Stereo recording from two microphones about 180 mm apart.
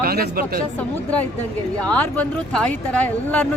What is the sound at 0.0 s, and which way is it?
Speech, 55° right (ahead or behind).